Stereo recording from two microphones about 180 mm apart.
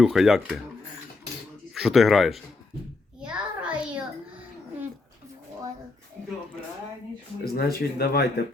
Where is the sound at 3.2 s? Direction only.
5° right (ahead or behind).